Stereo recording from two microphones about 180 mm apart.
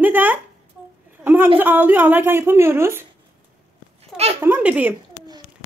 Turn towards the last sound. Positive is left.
turn(degrees=-10)  # may be behind; listen again after turning